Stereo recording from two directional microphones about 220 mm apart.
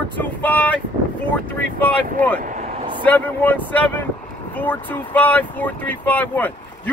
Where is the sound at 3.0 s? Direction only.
5° left (ahead or behind).